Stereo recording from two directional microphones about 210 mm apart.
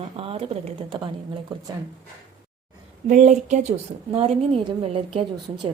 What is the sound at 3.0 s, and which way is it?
A woman's voice, 35° right (ahead or behind).